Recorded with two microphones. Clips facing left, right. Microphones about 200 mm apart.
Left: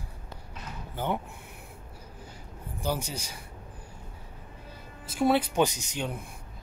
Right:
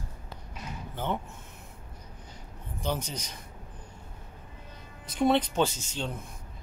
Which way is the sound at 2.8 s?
10° left (ahead or behind).